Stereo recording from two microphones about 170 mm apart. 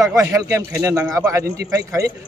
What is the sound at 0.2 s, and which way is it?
A man's voice, 15° right (ahead or behind).